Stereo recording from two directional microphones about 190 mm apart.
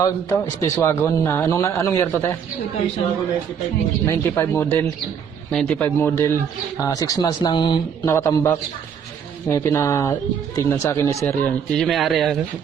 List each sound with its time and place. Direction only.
0.0 s speech: 15° left (ahead or behind)
4.0 s speech: 15° left (ahead or behind)
8.1 s speech: 15° left (ahead or behind)